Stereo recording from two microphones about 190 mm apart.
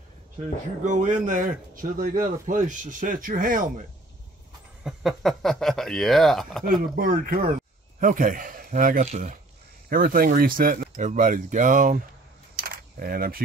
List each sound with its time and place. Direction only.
0.8 s speech: 40° right (ahead or behind)
4.8 s speech: centre (ahead or behind)
7.0 s a man's voice: 45° right (ahead or behind)
12.5 s a sound: 50° right (ahead or behind)